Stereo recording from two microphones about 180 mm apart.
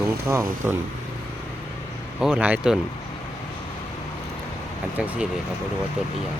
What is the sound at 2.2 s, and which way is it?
Speech, 5° right (ahead or behind).